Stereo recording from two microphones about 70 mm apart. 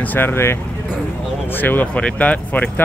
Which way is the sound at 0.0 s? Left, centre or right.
Left.